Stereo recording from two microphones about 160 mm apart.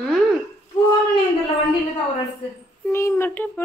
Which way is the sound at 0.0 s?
Centre (ahead or behind).